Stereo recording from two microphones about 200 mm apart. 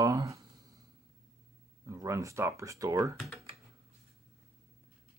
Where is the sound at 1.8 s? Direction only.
15° right (ahead or behind).